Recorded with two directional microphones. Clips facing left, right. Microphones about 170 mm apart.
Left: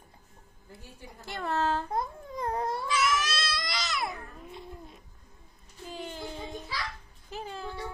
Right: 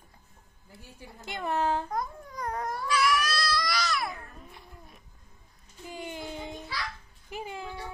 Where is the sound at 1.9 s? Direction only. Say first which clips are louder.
Left 1 dB; 25° left (ahead or behind).